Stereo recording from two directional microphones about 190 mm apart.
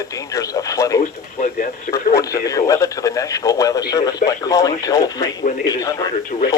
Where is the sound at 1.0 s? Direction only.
45° left (ahead or behind).